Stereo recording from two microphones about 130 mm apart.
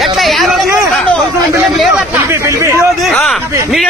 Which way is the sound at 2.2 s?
20° right (ahead or behind).